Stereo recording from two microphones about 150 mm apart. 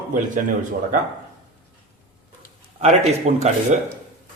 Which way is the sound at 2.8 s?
50° right (ahead or behind).